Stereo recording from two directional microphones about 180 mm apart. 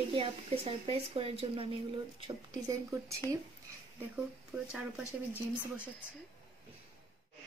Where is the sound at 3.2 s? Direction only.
15° left (ahead or behind).